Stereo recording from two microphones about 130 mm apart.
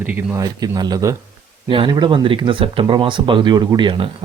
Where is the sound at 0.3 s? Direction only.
30° right (ahead or behind).